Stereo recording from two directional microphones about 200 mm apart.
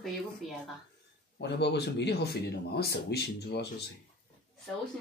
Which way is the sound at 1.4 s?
55° left (ahead or behind).